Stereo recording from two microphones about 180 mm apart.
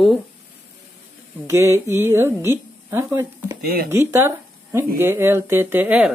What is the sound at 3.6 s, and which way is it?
Speech, 60° right (ahead or behind).